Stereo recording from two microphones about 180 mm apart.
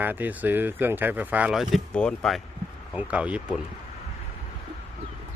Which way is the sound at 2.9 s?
10° right (ahead or behind).